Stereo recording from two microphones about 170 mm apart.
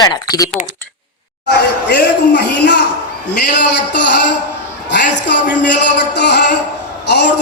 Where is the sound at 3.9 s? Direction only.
85° left.